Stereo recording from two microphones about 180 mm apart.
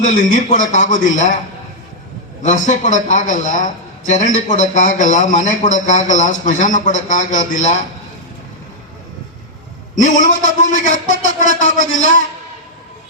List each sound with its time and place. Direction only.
0.0 s a man's voice: 45° left (ahead or behind)
2.4 s a man's voice: 40° left (ahead or behind)
9.9 s a man's voice: 45° left (ahead or behind)